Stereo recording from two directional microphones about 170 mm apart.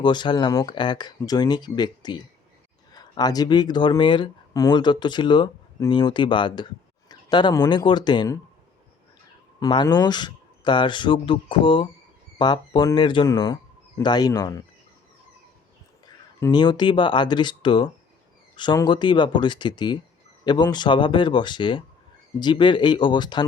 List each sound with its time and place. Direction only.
0.0 s speech: 25° left (ahead or behind)
9.6 s speech: 25° left (ahead or behind)
16.0 s speech: 25° left (ahead or behind)